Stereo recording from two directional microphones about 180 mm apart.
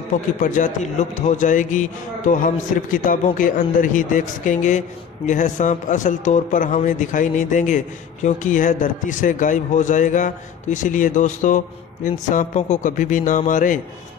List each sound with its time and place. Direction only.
0.4 s a man's voice: 45° left (ahead or behind)